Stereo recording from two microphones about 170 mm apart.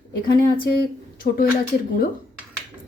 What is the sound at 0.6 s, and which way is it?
Speech, 65° left (ahead or behind).